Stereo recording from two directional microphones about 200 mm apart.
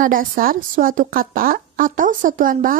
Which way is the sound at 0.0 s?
45° right (ahead or behind).